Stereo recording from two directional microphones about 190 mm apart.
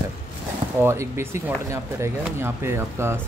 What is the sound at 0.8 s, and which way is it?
Speech, 15° right (ahead or behind).